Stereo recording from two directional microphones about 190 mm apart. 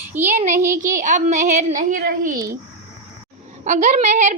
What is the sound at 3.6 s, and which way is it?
Speech, 40° right (ahead or behind).